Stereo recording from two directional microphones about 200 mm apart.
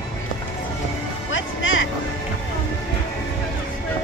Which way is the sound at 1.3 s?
75° left (ahead or behind).